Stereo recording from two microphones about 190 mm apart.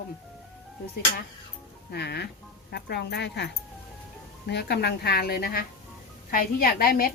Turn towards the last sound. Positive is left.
turn(degrees=50)  # may be behind; listen again after turning